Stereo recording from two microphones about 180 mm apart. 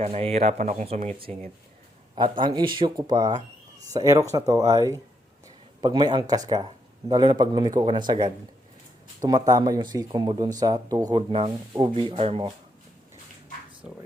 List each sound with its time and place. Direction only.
0.0 s speech: 35° right (ahead or behind)